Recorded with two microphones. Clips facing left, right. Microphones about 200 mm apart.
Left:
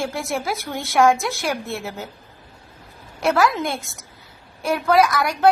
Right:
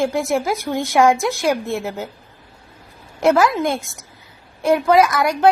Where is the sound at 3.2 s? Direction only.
15° right (ahead or behind).